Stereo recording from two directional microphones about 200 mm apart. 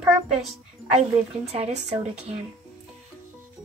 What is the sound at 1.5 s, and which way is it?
Speech, 30° right (ahead or behind).